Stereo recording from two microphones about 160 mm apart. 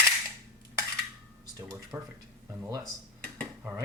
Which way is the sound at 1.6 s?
15° right (ahead or behind).